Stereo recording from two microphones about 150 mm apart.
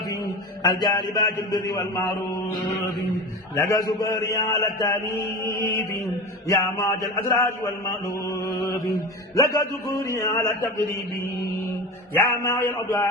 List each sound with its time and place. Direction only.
0.6 s a man's voice: 30° left (ahead or behind)
3.5 s a man's voice: 20° left (ahead or behind)
6.5 s a man's voice: 20° left (ahead or behind)
10.0 s a man's voice: 20° left (ahead or behind)
12.1 s a man's voice: 20° left (ahead or behind)